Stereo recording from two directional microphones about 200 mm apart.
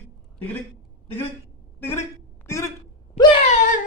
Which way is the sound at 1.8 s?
15° left (ahead or behind).